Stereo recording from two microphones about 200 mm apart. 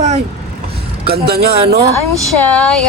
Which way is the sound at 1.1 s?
50° right (ahead or behind).